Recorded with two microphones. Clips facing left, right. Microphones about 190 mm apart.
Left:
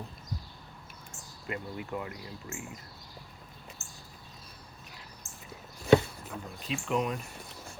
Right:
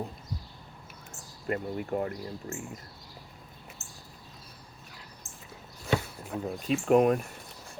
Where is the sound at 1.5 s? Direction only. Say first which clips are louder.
Right 6 dB; 45° right (ahead or behind).